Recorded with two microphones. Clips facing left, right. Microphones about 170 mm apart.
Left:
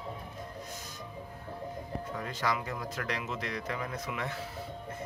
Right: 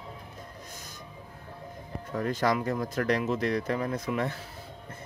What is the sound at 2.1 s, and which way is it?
Speech, 45° right (ahead or behind).